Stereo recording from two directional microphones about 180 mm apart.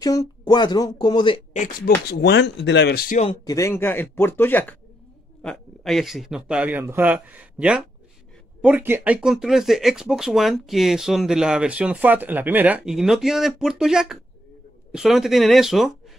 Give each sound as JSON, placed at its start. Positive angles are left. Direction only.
{"t": 0.0, "sound": "speech", "side_deg": 20}
{"t": 2.0, "sound": "speech", "side_deg": 70}
{"t": 3.4, "sound": "speech", "side_deg": 15}